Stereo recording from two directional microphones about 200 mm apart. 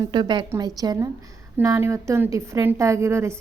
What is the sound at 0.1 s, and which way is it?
A woman's voice, 20° right (ahead or behind).